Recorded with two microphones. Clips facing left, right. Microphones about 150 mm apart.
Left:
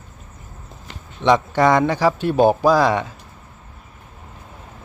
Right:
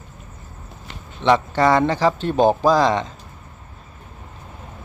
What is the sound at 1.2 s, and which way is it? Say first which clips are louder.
Speech: left 1 dB; 15° left (ahead or behind).